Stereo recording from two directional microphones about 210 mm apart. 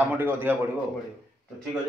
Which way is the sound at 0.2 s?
10° right (ahead or behind).